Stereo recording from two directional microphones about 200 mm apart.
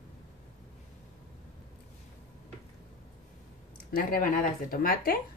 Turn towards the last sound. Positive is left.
turn(degrees=45)  # may be behind; listen again after turning